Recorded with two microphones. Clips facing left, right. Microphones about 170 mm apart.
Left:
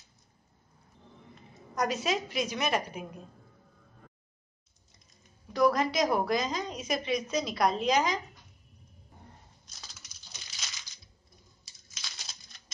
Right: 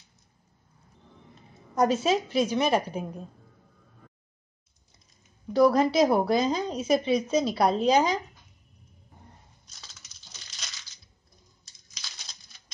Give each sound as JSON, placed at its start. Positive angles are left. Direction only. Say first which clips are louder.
{"t": 1.8, "sound": "a woman's voice", "louder": "right 7 dB", "side_deg": -30}
{"t": 5.5, "sound": "a woman's voice", "louder": "right 5 dB", "side_deg": -30}
{"t": 11.6, "sound": "a sound", "louder": "even", "side_deg": 5}